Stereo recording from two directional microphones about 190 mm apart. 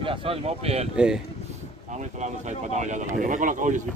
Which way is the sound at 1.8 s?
40° right (ahead or behind).